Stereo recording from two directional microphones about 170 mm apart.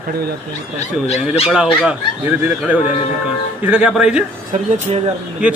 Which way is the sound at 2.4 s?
10° right (ahead or behind).